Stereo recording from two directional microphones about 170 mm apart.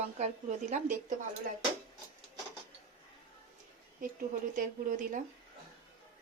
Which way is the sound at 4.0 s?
55° right (ahead or behind).